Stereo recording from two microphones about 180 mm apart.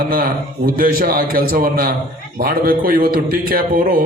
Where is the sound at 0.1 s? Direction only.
50° right (ahead or behind).